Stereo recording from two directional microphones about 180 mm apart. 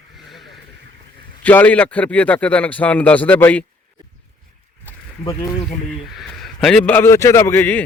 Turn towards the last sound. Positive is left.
turn(degrees=10)  # may be behind; listen again after turning